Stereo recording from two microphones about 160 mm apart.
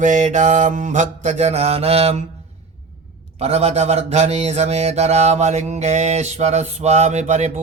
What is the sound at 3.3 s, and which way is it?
A man's voice, 40° right (ahead or behind).